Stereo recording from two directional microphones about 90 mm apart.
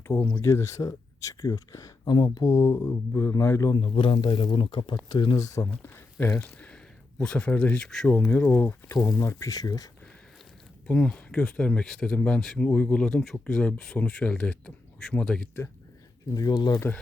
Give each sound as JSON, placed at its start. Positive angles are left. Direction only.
{"t": 0.1, "sound": "speech", "side_deg": 15}
{"t": 0.4, "sound": "speech", "side_deg": 35}
{"t": 3.7, "sound": "speech", "side_deg": 65}
{"t": 5.5, "sound": "speech", "side_deg": 30}
{"t": 7.2, "sound": "speech", "side_deg": 15}
{"t": 7.9, "sound": "speech", "side_deg": 5}
{"t": 8.3, "sound": "speech", "side_deg": 20}
{"t": 10.8, "sound": "speech", "side_deg": 10}
{"t": 16.3, "sound": "speech", "side_deg": 45}